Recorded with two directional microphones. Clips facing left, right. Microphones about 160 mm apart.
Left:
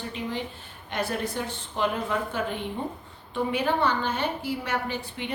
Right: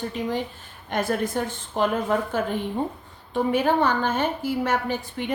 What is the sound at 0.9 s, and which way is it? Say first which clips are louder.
A woman's voice: right 5 dB; 45° right (ahead or behind).